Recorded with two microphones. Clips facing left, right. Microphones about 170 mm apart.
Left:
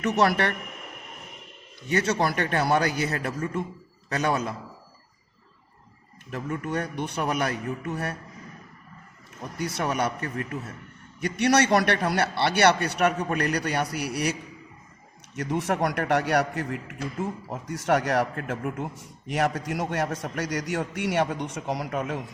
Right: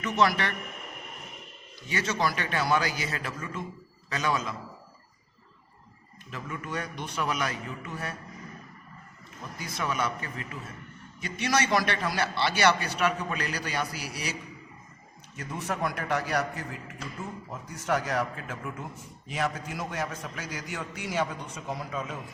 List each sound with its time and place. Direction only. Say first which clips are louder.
0.0 s a man's voice: left 3 dB; 60° left (ahead or behind)
1.9 s a man's voice: left 5 dB; 60° left (ahead or behind)
6.3 s a man's voice: left 6 dB; 55° left (ahead or behind)
9.6 s a man's voice: left 4 dB; 65° left (ahead or behind)
15.4 s a man's voice: left 6 dB; 75° left (ahead or behind)